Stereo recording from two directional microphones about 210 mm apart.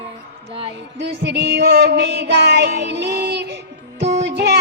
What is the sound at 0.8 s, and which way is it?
Music, 55° right (ahead or behind).